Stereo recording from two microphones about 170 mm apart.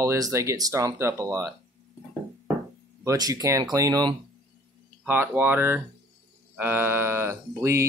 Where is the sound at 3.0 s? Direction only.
20° right (ahead or behind).